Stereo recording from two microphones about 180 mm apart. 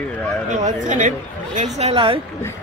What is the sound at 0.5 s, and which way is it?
A woman's voice, 45° right (ahead or behind).